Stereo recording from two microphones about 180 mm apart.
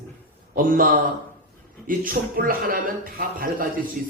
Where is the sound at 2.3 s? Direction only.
50° right (ahead or behind).